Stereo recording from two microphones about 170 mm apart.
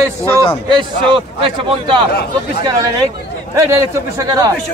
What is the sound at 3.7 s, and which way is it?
Speech, 20° right (ahead or behind).